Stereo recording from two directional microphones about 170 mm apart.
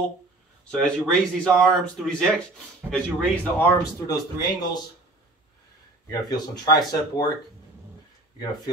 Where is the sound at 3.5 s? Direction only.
15° left (ahead or behind).